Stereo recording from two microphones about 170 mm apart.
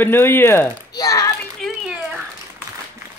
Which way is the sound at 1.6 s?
5° right (ahead or behind).